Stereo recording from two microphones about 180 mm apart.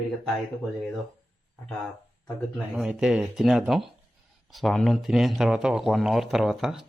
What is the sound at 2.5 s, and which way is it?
Speech, centre (ahead or behind).